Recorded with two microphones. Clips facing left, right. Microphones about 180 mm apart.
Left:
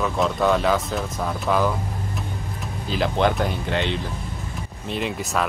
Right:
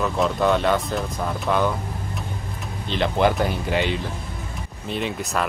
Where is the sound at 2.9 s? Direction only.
Centre (ahead or behind).